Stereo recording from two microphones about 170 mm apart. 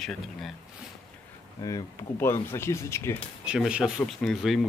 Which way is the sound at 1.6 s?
20° left (ahead or behind).